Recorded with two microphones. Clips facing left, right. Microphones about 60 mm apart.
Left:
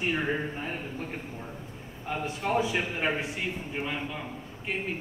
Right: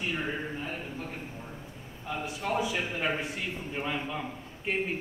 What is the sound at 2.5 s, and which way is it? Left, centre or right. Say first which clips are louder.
Speech: left 2 dB; left.